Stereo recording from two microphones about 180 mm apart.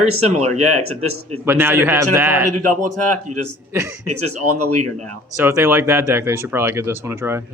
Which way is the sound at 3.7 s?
15° right (ahead or behind).